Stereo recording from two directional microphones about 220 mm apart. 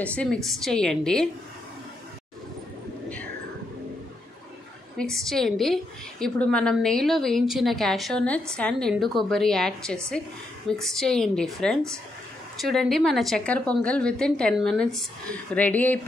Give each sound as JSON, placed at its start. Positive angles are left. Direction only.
{"t": 0.0, "sound": "a woman's voice", "side_deg": 5}
{"t": 4.9, "sound": "a woman's voice", "side_deg": 0}